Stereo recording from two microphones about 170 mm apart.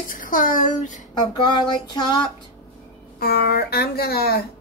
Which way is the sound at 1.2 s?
30° left (ahead or behind).